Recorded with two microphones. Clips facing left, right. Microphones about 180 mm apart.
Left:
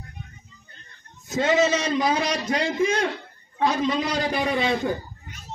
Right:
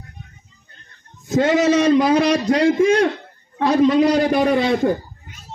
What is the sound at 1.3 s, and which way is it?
A man's voice, 55° right (ahead or behind).